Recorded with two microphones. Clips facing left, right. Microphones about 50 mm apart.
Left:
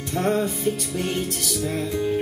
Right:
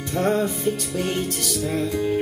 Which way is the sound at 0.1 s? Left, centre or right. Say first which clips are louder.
Right 1 dB; centre.